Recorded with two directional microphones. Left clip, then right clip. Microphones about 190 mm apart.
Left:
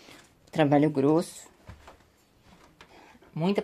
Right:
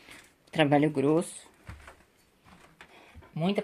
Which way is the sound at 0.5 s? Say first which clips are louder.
Left 1 dB; 5° left (ahead or behind).